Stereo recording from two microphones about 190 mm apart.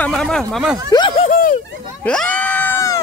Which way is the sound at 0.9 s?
25° left (ahead or behind).